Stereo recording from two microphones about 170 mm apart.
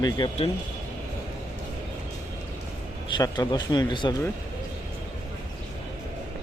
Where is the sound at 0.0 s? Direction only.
30° left (ahead or behind).